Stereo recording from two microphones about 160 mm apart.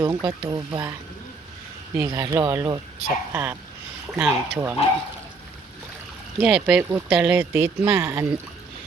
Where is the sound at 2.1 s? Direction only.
20° right (ahead or behind).